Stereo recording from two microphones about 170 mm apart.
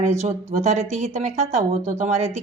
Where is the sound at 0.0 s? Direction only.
45° right (ahead or behind).